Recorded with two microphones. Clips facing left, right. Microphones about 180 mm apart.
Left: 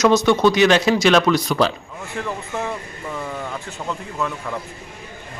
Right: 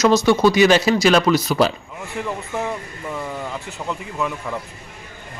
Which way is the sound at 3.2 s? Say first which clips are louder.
Even; 5° right (ahead or behind).